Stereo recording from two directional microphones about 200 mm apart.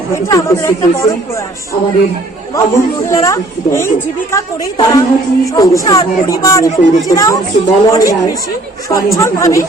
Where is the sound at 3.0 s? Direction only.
15° left (ahead or behind).